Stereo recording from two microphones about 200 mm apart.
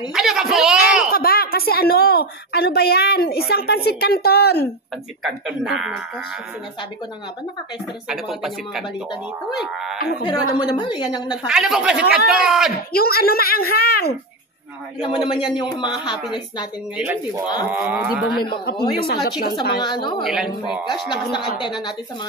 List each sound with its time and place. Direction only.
0.1 s a sound: centre (ahead or behind)
1.1 s a woman's voice: 50° left (ahead or behind)
5.2 s speech: centre (ahead or behind)
8.1 s speech: centre (ahead or behind)
9.9 s a woman's voice: 50° left (ahead or behind)
10.2 s a woman's voice: 25° left (ahead or behind)
11.4 s speech: 5° right (ahead or behind)
12.9 s a woman's voice: 50° left (ahead or behind)
15.0 s a woman's voice: 25° left (ahead or behind)
17.7 s speech: 5° right (ahead or behind)
18.4 s a woman's voice: 25° left (ahead or behind)
20.2 s speech: 5° right (ahead or behind)
21.1 s a woman's voice: 20° left (ahead or behind)